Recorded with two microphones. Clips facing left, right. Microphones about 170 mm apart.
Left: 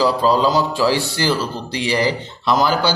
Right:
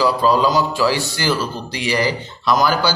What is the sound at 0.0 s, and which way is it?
Speech, 30° left (ahead or behind).